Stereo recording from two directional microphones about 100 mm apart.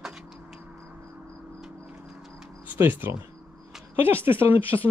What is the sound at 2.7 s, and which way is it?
A man's voice, 20° right (ahead or behind).